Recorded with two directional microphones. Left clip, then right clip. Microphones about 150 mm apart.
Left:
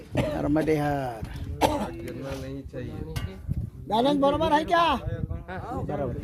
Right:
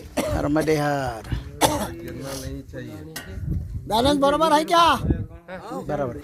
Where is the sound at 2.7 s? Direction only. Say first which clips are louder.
Even; 20° right (ahead or behind).